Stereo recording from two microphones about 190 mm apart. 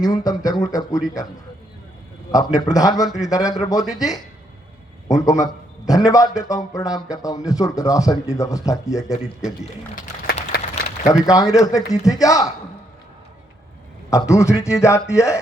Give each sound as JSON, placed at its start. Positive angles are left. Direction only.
{"t": 0.0, "sound": "a man's voice", "side_deg": 20}
{"t": 2.3, "sound": "a man's voice", "side_deg": 20}
{"t": 9.1, "sound": "a man's voice", "side_deg": 40}
{"t": 11.0, "sound": "a man's voice", "side_deg": 20}
{"t": 14.1, "sound": "speech", "side_deg": 15}